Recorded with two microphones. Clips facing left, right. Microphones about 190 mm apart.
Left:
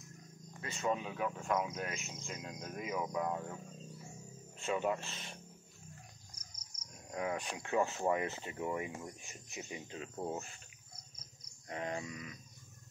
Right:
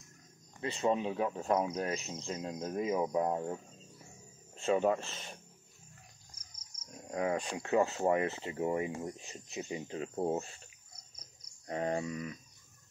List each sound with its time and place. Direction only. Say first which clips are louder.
0.6 s speech: right 5 dB; 30° right (ahead or behind)
4.6 s speech: right 6 dB; 40° right (ahead or behind)
7.1 s speech: right 5 dB; 35° right (ahead or behind)
11.6 s speech: right 6 dB; 35° right (ahead or behind)